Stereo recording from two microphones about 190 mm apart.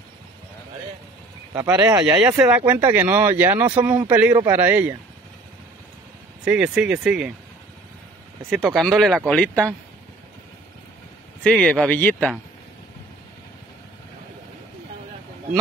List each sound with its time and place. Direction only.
1.5 s speech: 15° right (ahead or behind)
2.1 s speech: 5° right (ahead or behind)
3.8 s speech: 20° right (ahead or behind)
4.1 s speech: 10° right (ahead or behind)
6.4 s speech: 5° right (ahead or behind)
8.5 s speech: centre (ahead or behind)
11.4 s speech: 5° left (ahead or behind)